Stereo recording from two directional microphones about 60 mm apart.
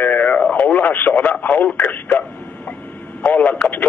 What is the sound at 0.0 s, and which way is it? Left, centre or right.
Radio, left.